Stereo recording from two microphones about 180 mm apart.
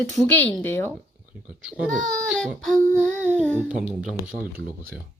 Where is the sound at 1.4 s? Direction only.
5° right (ahead or behind).